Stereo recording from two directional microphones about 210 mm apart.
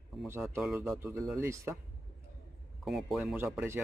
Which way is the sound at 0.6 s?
Centre (ahead or behind).